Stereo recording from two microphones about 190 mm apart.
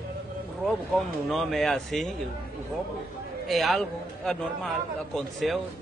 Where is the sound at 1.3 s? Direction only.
Centre (ahead or behind).